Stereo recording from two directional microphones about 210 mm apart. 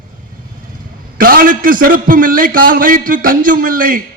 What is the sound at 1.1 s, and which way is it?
A man's voice, 45° right (ahead or behind).